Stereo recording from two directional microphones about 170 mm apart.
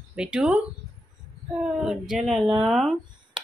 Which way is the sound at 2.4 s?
30° right (ahead or behind).